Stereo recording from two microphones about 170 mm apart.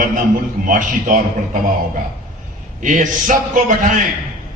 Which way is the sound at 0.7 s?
50° right (ahead or behind).